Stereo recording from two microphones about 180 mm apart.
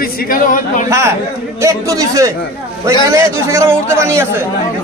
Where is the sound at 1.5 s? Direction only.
15° right (ahead or behind).